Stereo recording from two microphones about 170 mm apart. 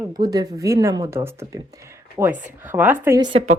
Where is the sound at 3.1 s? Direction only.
25° right (ahead or behind).